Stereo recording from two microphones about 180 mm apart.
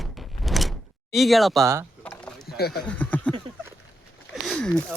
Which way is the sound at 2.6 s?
60° left (ahead or behind).